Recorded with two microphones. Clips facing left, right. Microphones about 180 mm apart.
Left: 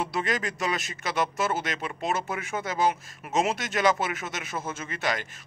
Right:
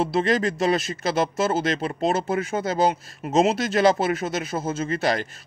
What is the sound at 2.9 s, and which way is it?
Speech, 30° right (ahead or behind).